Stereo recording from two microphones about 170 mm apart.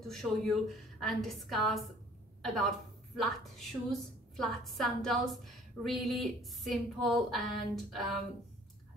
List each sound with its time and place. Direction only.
0.1 s a woman's voice: centre (ahead or behind)